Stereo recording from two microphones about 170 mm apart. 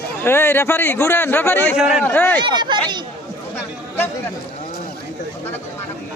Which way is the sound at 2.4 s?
25° right (ahead or behind).